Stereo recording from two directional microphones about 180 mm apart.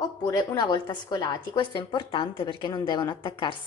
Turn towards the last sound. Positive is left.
turn(degrees=30)  # may be behind; listen again after turning